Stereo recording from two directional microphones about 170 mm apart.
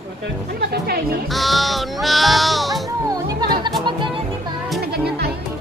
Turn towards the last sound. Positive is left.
turn(degrees=0)  # may be behind; listen again after turning